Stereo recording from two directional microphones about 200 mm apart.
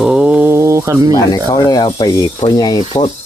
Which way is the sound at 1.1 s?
20° left (ahead or behind).